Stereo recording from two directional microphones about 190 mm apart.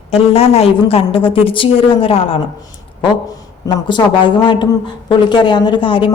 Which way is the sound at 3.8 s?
25° left (ahead or behind).